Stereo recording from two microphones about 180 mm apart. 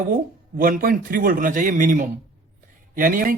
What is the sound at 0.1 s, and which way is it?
Speech, 55° right (ahead or behind).